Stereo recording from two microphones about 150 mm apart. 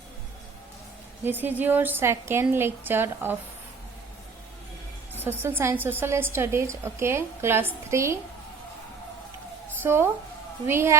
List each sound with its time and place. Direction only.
1.2 s a woman's voice: 15° right (ahead or behind)
5.2 s a woman's voice: 15° right (ahead or behind)
9.8 s a woman's voice: 15° right (ahead or behind)